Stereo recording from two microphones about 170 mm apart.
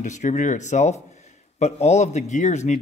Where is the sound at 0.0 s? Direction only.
45° left (ahead or behind).